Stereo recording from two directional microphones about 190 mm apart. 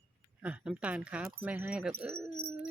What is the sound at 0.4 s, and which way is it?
Speech, 5° right (ahead or behind).